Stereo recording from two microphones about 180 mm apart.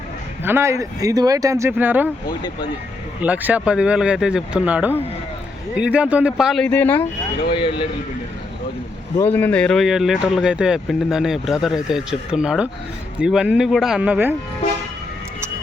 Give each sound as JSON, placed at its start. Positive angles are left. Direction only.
{"t": 0.4, "sound": "speech", "side_deg": -15}
{"t": 2.2, "sound": "speech", "side_deg": 25}
{"t": 3.2, "sound": "speech", "side_deg": -10}
{"t": 6.7, "sound": "speech", "side_deg": 10}
{"t": 7.5, "sound": "speech", "side_deg": 30}
{"t": 9.1, "sound": "speech", "side_deg": 10}